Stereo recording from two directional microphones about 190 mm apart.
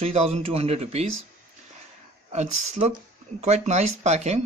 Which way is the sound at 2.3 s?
35° right (ahead or behind).